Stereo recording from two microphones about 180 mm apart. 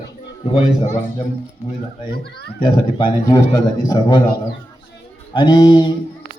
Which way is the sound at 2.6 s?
25° left (ahead or behind).